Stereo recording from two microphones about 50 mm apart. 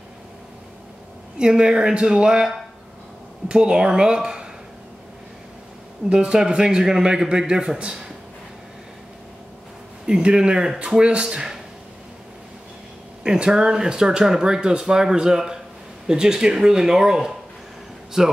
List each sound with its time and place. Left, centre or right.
1.4 s speech: centre
6.0 s speech: centre
10.0 s speech: centre
13.2 s speech: centre